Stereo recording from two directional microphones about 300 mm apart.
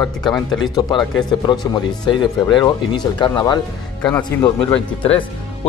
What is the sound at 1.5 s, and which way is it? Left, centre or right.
Speech, centre.